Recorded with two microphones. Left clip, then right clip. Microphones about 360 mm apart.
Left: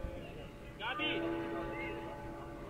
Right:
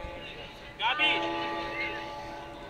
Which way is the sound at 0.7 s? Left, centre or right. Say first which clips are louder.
Right 11 dB; right.